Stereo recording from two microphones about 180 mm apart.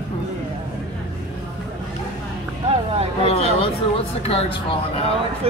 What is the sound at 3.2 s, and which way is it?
Speech, 35° left (ahead or behind).